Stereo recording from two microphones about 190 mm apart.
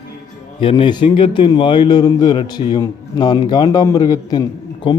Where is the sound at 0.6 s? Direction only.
25° left (ahead or behind).